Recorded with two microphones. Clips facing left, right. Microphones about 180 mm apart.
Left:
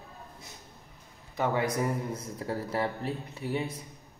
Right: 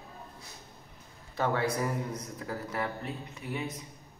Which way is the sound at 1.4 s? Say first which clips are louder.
Left 1 dB; 15° left (ahead or behind).